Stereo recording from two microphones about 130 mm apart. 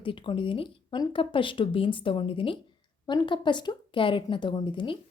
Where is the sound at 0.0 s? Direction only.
40° left (ahead or behind).